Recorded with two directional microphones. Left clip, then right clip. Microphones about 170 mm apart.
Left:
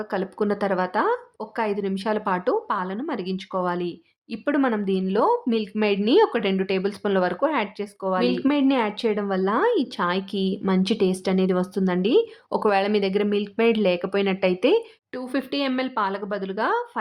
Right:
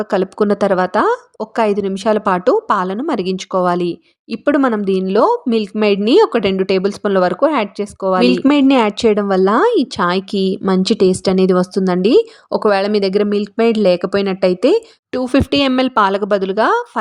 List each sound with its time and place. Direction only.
0.0 s a woman's voice: 35° right (ahead or behind)
15.1 s speech: 40° right (ahead or behind)